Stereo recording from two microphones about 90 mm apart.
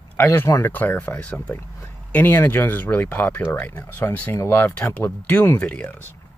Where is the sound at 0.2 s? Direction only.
25° left (ahead or behind).